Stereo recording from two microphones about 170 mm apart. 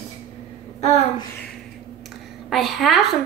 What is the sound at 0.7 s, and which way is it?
Speech, 40° left (ahead or behind).